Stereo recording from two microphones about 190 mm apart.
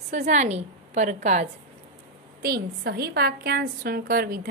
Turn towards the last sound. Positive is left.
turn(degrees=-50)  # may be behind; listen again after turning